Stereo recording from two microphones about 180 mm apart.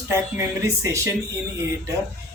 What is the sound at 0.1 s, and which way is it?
Speech, 15° right (ahead or behind).